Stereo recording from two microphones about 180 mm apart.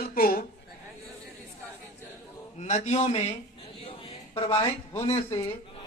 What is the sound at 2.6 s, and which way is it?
A man's voice, 40° left (ahead or behind).